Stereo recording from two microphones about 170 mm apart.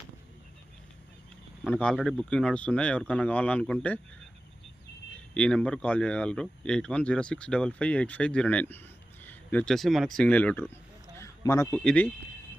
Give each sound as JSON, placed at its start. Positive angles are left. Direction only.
{"t": 1.6, "sound": "speech", "side_deg": 5}
{"t": 5.1, "sound": "speech", "side_deg": 5}
{"t": 11.2, "sound": "a sound", "side_deg": 20}
{"t": 11.8, "sound": "speech", "side_deg": 5}